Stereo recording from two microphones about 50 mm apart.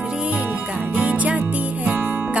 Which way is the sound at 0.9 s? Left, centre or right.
Right.